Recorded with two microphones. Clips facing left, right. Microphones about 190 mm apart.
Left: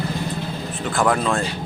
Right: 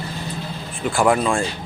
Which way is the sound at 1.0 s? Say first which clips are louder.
Right 2 dB; 10° right (ahead or behind).